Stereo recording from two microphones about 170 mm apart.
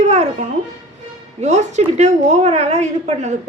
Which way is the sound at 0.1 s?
40° right (ahead or behind).